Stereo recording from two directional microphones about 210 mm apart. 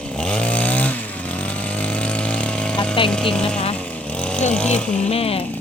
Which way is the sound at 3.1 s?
5° left (ahead or behind).